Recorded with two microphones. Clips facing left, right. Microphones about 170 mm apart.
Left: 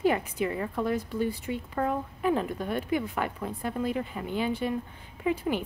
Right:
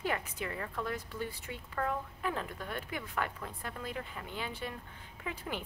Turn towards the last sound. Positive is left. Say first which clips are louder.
# left 12 dB
turn(degrees=10)  # may be behind; listen again after turning